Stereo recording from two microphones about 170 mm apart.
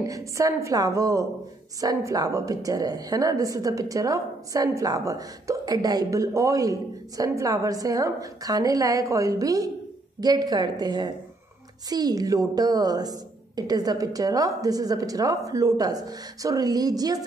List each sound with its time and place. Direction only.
0.0 s a woman's voice: 20° right (ahead or behind)